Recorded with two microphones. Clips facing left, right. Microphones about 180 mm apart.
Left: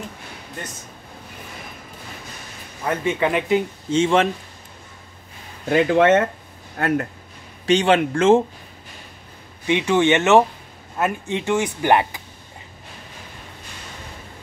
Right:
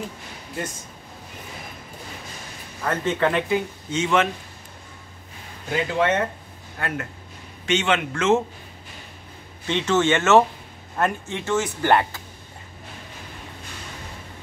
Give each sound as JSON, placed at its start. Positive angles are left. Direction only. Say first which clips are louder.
{"t": 2.8, "sound": "speech", "louder": "left 1 dB", "side_deg": 15}
{"t": 5.7, "sound": "speech", "louder": "left 7 dB", "side_deg": 60}
{"t": 6.8, "sound": "a man's voice", "louder": "left 8 dB", "side_deg": 40}
{"t": 9.7, "sound": "speech", "louder": "left 3 dB", "side_deg": 15}